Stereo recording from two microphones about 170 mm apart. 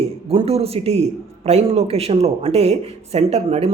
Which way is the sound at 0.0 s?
35° right (ahead or behind).